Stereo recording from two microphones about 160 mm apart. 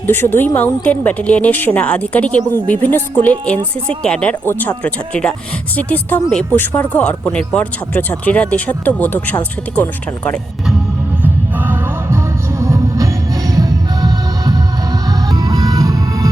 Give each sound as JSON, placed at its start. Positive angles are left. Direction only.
{"t": 0.1, "sound": "speech", "side_deg": 15}
{"t": 11.2, "sound": "music", "side_deg": -10}